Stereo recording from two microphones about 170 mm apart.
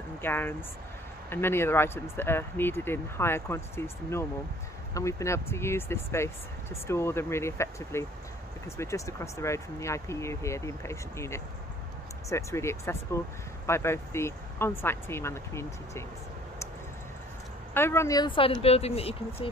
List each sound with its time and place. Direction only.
0.2 s speech: 10° left (ahead or behind)
17.7 s speech: 15° left (ahead or behind); by 19.1 s 35° left (ahead or behind)